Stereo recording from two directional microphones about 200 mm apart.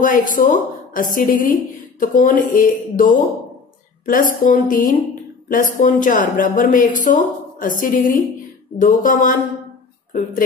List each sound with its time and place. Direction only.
0.0 s a woman's voice: 40° left (ahead or behind)